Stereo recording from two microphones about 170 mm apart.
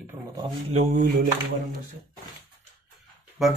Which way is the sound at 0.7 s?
55° right (ahead or behind).